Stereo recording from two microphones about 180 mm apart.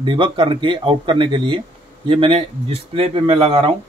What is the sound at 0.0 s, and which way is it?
Speech, 25° right (ahead or behind).